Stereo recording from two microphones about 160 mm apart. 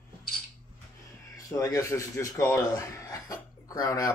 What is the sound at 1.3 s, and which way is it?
Speech, 20° left (ahead or behind).